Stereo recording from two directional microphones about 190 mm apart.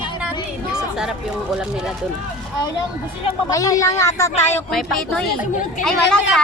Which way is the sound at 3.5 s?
15° left (ahead or behind).